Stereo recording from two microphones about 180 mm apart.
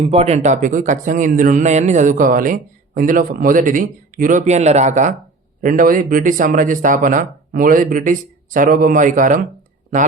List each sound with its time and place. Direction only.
0.0 s speech: 35° right (ahead or behind)